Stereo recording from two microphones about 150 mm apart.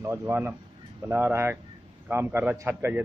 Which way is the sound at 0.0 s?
15° right (ahead or behind).